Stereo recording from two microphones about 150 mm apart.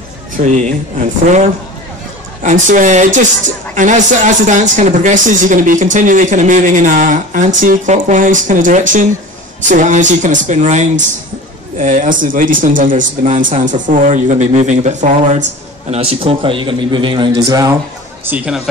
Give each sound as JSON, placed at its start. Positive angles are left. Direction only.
{"t": 0.4, "sound": "speech", "side_deg": -55}
{"t": 2.4, "sound": "speech", "side_deg": -55}
{"t": 15.9, "sound": "a man's voice", "side_deg": -40}
{"t": 18.2, "sound": "speech", "side_deg": -10}